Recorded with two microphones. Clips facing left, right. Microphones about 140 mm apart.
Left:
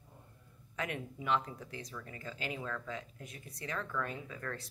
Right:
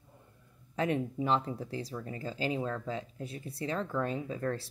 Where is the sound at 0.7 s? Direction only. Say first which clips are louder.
Right 9 dB; 30° right (ahead or behind).